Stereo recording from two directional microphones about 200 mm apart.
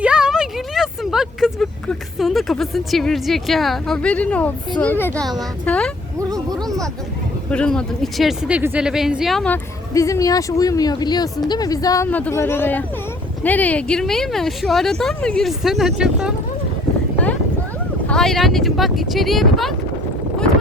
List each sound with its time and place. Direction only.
0.0 s vehicle: 5° right (ahead or behind)
4.8 s speech: 10° left (ahead or behind)
7.5 s speech: 5° left (ahead or behind)
9.9 s speech: 15° left (ahead or behind); by 16.3 s 5° right (ahead or behind)
18.1 s speech: centre (ahead or behind)